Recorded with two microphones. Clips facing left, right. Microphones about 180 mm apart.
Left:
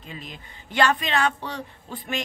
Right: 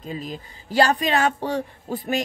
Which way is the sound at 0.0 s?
40° right (ahead or behind).